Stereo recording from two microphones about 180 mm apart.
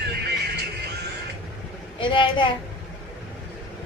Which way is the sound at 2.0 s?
25° left (ahead or behind).